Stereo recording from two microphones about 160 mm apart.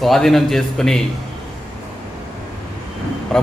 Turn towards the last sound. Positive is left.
turn(degrees=5)  # may be behind; listen again after turning